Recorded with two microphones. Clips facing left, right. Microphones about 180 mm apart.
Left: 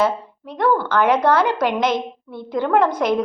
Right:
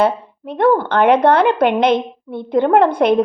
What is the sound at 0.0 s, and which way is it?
A woman's voice, 60° right (ahead or behind).